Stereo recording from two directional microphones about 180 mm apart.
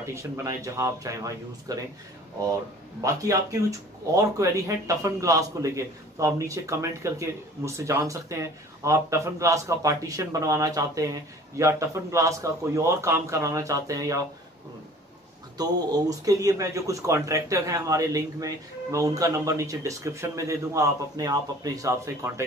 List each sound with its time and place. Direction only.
0.0 s a man's voice: 15° right (ahead or behind)
3.0 s a man's voice: 20° right (ahead or behind)
15.5 s a man's voice: 20° right (ahead or behind)